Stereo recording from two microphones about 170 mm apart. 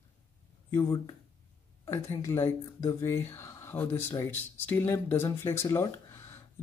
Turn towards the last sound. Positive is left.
turn(degrees=15)  # may be behind; listen again after turning